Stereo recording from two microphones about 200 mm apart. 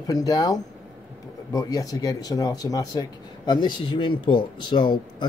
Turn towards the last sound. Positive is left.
turn(degrees=20)  # may be behind; listen again after turning